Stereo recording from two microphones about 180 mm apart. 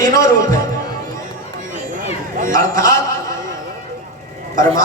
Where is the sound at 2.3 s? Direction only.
45° right (ahead or behind).